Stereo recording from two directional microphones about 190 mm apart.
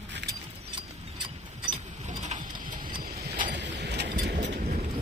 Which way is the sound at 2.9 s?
50° right (ahead or behind).